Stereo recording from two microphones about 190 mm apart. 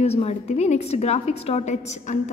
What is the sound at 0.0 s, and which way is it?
A woman's voice, 35° left (ahead or behind).